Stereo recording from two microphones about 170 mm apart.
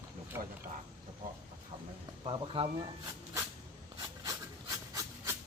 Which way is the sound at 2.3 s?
30° right (ahead or behind).